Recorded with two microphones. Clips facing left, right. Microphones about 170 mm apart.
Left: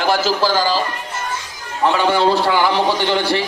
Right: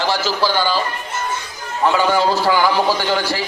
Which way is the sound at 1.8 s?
25° left (ahead or behind).